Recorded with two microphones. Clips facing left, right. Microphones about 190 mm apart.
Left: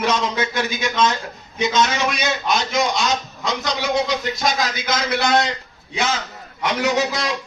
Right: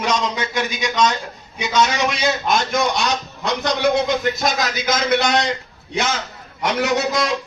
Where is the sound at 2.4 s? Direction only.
55° right (ahead or behind).